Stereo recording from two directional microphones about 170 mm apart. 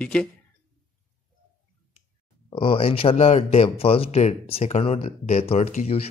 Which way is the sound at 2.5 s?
35° left (ahead or behind).